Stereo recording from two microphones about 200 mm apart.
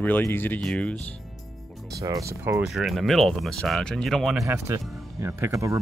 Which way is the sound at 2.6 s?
Centre (ahead or behind).